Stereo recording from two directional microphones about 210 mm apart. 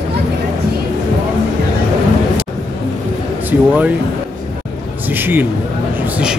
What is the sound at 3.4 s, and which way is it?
Speech, 10° right (ahead or behind).